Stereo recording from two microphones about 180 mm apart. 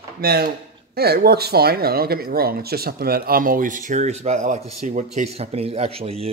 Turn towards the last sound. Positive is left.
turn(degrees=-35)  # may be behind; listen again after turning